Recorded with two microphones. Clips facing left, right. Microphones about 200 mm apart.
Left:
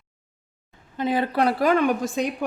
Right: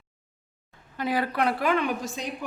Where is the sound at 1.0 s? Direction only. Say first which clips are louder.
Left 4 dB; 20° left (ahead or behind); by 2.2 s 50° left (ahead or behind).